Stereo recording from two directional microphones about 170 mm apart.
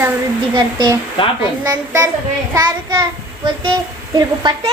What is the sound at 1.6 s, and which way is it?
Child singing, 20° right (ahead or behind).